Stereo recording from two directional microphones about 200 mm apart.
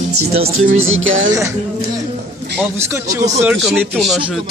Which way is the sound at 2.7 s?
15° right (ahead or behind).